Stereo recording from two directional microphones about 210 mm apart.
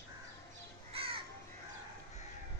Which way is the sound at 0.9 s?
25° right (ahead or behind).